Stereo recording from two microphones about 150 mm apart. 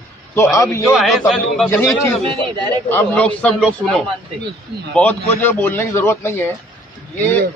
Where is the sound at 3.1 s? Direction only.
10° left (ahead or behind).